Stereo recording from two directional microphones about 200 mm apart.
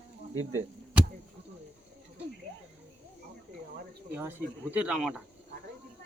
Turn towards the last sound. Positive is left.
turn(degrees=0)  # may be behind; listen again after turning